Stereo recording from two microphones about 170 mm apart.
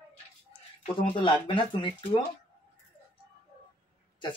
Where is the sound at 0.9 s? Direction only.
30° left (ahead or behind).